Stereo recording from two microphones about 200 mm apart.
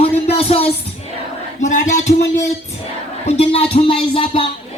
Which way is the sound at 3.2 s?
30° left (ahead or behind).